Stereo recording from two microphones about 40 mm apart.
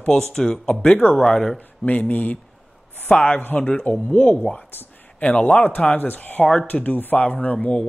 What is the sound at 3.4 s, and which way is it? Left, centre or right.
Speech, left.